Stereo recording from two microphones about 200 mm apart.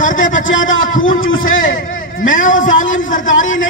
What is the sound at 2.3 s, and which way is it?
A man's voice, 40° left (ahead or behind).